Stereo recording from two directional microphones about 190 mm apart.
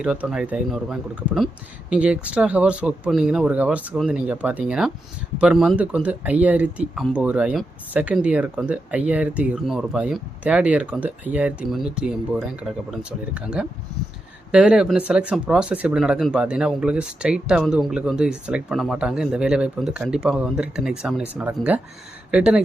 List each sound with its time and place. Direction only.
0.0 s speech: 5° right (ahead or behind)